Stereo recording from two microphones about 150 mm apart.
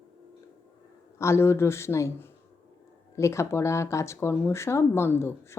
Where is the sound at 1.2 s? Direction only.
15° left (ahead or behind).